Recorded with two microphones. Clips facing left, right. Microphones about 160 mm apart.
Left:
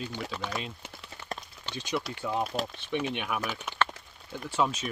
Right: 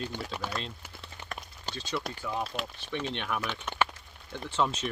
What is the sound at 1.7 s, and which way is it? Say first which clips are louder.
Speech: left 2 dB; 15° left (ahead or behind).